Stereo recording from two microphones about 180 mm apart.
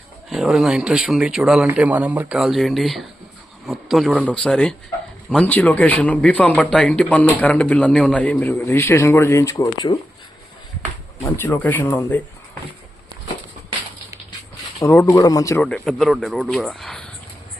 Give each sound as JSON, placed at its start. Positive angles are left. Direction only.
{"t": 0.3, "sound": "a man's voice", "side_deg": 0}
{"t": 11.2, "sound": "a man's voice", "side_deg": 10}
{"t": 14.8, "sound": "speech", "side_deg": 20}
{"t": 15.6, "sound": "speech", "side_deg": 5}